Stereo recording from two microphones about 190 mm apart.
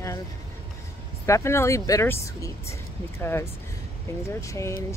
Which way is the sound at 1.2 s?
15° left (ahead or behind).